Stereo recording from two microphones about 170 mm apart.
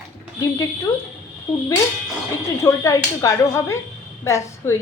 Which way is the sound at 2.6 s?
15° left (ahead or behind).